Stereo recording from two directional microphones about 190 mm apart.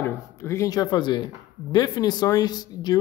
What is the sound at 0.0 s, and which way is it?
Speech, 15° left (ahead or behind).